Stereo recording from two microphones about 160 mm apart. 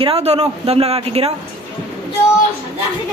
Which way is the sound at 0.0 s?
40° right (ahead or behind).